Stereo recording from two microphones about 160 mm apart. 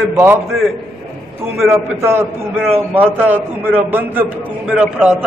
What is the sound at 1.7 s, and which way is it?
A man's voice, 15° right (ahead or behind).